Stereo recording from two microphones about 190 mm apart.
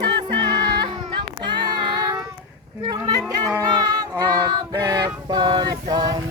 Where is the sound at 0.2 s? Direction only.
20° right (ahead or behind).